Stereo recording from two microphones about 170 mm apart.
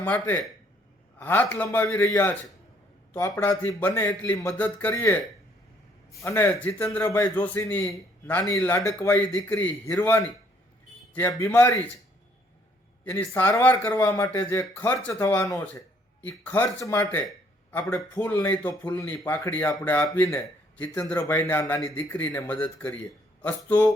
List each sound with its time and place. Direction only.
0.0 s speech: 10° left (ahead or behind)
6.2 s a man's voice: 10° left (ahead or behind)
13.1 s speech: 10° left (ahead or behind)
17.2 s a sound: 10° left (ahead or behind)
17.9 s speech: 10° left (ahead or behind)